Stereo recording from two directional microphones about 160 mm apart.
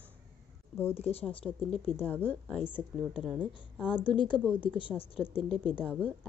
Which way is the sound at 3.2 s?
10° right (ahead or behind).